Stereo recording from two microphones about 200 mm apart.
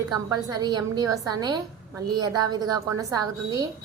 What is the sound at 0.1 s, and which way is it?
A woman's voice, 20° right (ahead or behind).